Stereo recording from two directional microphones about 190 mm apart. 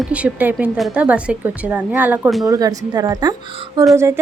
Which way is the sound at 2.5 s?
20° right (ahead or behind).